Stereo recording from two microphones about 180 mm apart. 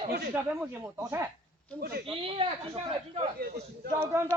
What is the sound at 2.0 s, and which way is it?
Speech, 30° right (ahead or behind).